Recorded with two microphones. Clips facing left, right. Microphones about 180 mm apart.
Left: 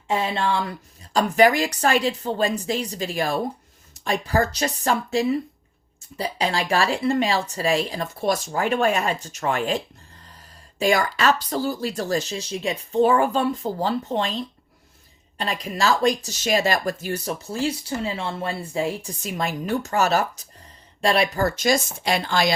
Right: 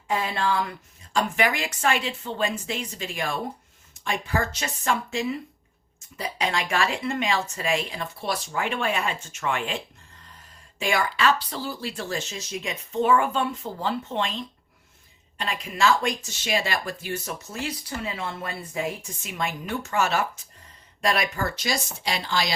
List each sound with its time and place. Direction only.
0.1 s speech: 25° left (ahead or behind)
1.1 s speech: 40° left (ahead or behind)